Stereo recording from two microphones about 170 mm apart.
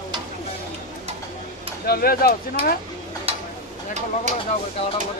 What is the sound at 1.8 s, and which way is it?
Speech, 65° left (ahead or behind).